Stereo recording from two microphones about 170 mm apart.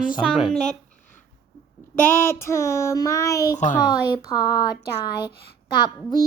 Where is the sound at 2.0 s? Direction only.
15° left (ahead or behind).